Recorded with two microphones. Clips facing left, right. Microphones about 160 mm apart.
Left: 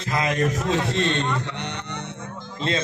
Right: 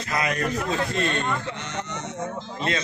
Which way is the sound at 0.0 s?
25° left (ahead or behind).